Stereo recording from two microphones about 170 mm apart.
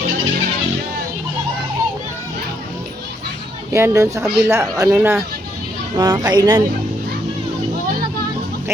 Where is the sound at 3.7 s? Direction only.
15° right (ahead or behind).